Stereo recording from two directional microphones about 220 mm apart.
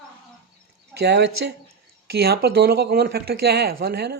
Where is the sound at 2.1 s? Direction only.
45° right (ahead or behind).